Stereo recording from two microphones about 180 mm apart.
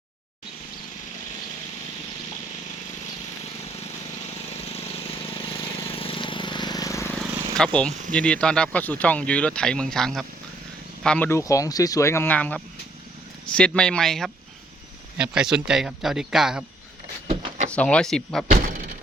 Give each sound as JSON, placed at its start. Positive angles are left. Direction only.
{"t": 5.3, "sound": "vehicle", "side_deg": 30}
{"t": 7.2, "sound": "purr", "side_deg": 5}
{"t": 8.1, "sound": "speech", "side_deg": 5}
{"t": 17.2, "sound": "a sound", "side_deg": -35}
{"t": 17.7, "sound": "speech", "side_deg": 5}
{"t": 18.5, "sound": "thunk", "side_deg": -50}